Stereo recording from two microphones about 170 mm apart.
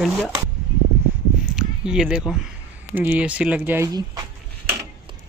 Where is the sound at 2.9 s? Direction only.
10° right (ahead or behind).